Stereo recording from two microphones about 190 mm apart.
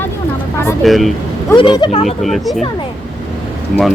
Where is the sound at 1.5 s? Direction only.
25° left (ahead or behind).